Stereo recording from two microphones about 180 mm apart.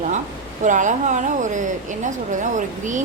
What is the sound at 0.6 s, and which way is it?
Speech, 45° right (ahead or behind).